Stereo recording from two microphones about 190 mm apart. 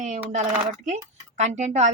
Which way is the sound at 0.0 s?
40° right (ahead or behind).